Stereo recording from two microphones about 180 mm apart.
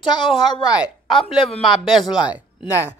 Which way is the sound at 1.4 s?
30° left (ahead or behind).